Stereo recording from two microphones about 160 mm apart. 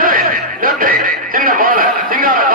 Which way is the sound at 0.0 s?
60° right (ahead or behind).